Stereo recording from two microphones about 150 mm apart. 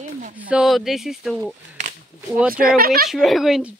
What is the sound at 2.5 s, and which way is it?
Speech, 80° right.